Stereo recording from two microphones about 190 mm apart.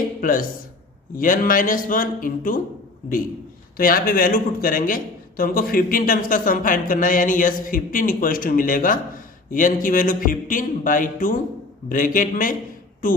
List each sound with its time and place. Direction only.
0.2 s speech: 45° left (ahead or behind)
3.8 s speech: 50° left (ahead or behind)